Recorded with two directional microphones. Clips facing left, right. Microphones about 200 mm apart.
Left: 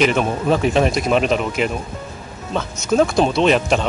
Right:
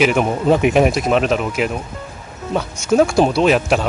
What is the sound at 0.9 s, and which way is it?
Speech, centre (ahead or behind).